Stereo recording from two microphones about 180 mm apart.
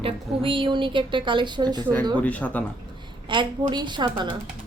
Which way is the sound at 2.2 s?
10° left (ahead or behind).